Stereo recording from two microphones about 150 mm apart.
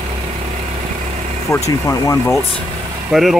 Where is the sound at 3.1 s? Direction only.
Centre (ahead or behind).